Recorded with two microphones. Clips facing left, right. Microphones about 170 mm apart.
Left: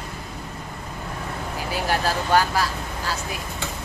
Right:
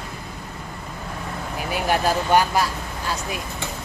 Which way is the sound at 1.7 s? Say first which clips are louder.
Right 3 dB; 15° right (ahead or behind).